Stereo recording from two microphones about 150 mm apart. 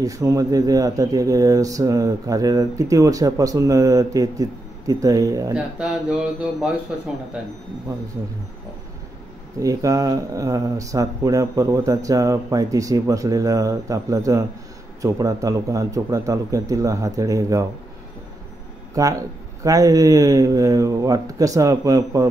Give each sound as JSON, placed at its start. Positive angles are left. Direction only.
{"t": 0.0, "sound": "speech", "side_deg": -20}
{"t": 5.5, "sound": "speech", "side_deg": -5}
{"t": 9.6, "sound": "speech", "side_deg": -20}
{"t": 18.9, "sound": "speech", "side_deg": -20}